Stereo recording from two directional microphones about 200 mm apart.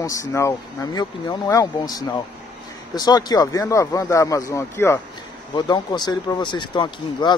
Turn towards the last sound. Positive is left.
turn(degrees=25)  # may be behind; listen again after turning